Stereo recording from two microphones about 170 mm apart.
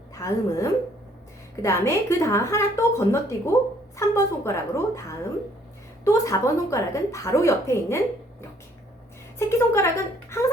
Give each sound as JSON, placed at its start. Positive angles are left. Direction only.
{"t": 0.1, "sound": "a woman's voice", "side_deg": 20}
{"t": 9.5, "sound": "speech", "side_deg": 15}